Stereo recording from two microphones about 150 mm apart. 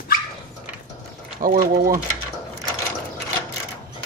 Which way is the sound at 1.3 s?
70° right (ahead or behind).